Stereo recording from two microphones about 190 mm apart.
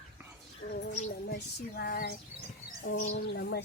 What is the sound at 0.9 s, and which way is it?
Child singing, 40° left (ahead or behind).